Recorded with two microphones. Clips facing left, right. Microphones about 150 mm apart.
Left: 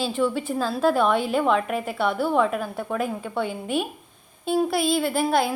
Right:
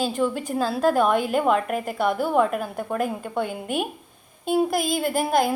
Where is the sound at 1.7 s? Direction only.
45° right (ahead or behind).